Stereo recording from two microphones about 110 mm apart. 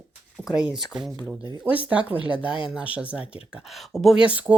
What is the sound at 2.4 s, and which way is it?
Speech, 50° left (ahead or behind).